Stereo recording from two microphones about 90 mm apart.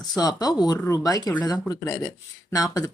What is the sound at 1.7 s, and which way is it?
Speech, 35° left (ahead or behind).